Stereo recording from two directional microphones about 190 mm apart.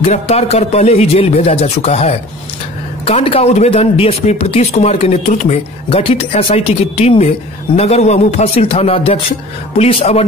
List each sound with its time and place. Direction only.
0.0 s speech: 35° left (ahead or behind)